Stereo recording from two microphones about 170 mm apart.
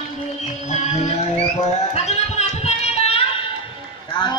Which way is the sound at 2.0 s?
40° left (ahead or behind).